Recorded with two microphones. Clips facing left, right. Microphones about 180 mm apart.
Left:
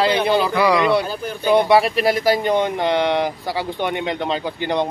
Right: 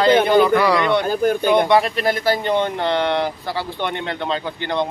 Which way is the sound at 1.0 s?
55° right (ahead or behind).